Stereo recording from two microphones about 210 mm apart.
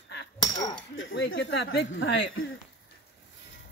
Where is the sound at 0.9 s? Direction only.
60° left (ahead or behind).